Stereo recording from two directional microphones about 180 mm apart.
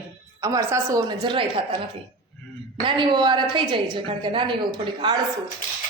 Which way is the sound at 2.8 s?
25° right (ahead or behind).